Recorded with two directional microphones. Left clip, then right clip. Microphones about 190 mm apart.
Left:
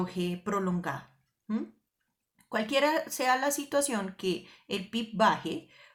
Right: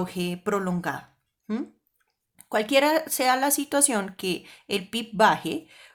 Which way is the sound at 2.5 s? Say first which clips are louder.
Right 6 dB; 40° right (ahead or behind).